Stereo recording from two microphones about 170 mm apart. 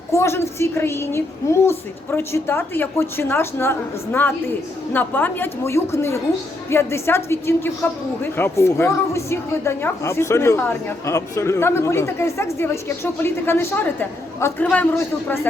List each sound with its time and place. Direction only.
0.1 s a woman's voice: 15° left (ahead or behind)